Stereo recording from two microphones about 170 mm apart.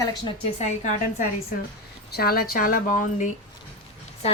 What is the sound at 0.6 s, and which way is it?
Speech, 45° left (ahead or behind).